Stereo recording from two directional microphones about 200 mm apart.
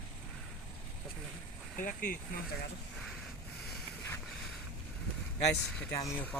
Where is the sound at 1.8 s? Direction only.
45° left (ahead or behind).